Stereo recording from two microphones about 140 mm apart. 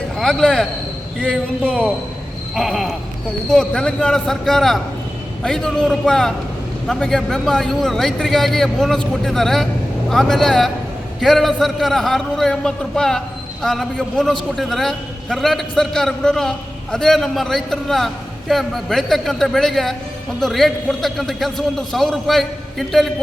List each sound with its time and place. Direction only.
0.2 s a man's voice: 5° left (ahead or behind)